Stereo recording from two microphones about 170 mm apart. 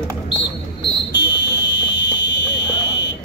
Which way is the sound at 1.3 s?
90° left.